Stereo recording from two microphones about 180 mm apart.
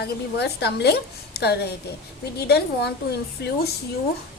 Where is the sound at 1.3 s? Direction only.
65° left (ahead or behind).